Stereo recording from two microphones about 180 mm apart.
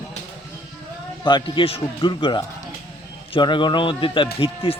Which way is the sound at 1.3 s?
25° left (ahead or behind).